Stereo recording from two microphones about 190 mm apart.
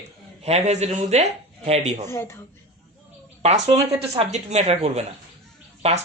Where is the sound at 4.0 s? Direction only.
35° right (ahead or behind).